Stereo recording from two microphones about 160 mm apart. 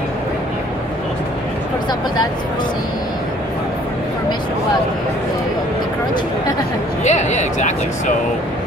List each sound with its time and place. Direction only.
7.1 s speech: 45° left (ahead or behind)